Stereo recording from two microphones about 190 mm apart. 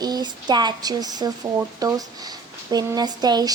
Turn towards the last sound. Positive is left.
turn(degrees=-20)  # may be behind; listen again after turning